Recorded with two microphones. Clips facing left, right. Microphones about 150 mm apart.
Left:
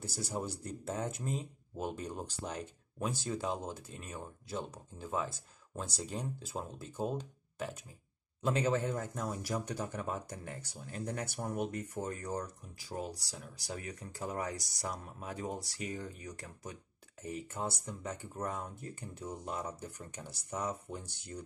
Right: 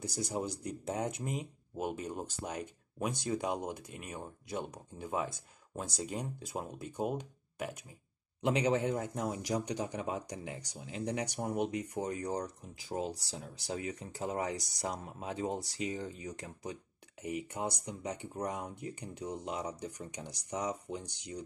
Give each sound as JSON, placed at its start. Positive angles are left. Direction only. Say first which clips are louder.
{"t": 0.0, "sound": "speech", "louder": "right 2 dB", "side_deg": -15}